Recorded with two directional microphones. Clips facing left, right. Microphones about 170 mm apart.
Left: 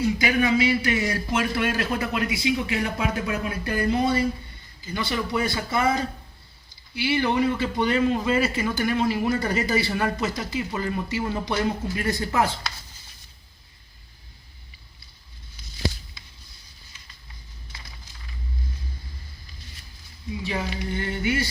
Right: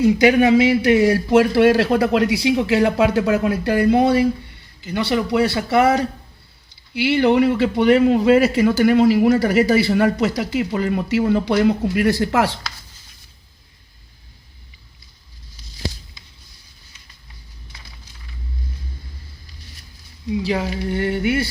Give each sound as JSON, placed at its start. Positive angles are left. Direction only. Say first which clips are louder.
{"t": 0.2, "sound": "a man's voice", "louder": "right 8 dB", "side_deg": -70}
{"t": 20.4, "sound": "speech", "louder": "right 5 dB", "side_deg": -80}